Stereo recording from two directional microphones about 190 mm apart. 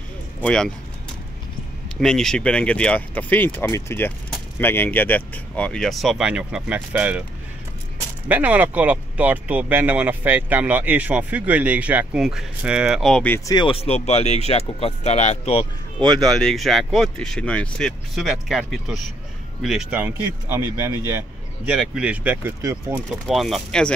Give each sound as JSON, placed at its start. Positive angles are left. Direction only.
{"t": 0.4, "sound": "speech", "side_deg": 5}
{"t": 2.0, "sound": "speech", "side_deg": 0}
{"t": 8.3, "sound": "speech", "side_deg": -10}
{"t": 13.5, "sound": "speech", "side_deg": 25}
{"t": 16.0, "sound": "speech", "side_deg": 0}
{"t": 23.2, "sound": "speech", "side_deg": 0}